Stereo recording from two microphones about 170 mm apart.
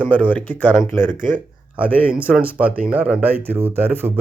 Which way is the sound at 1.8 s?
10° left (ahead or behind).